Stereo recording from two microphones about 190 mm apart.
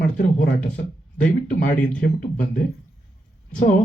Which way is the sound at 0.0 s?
45° left (ahead or behind).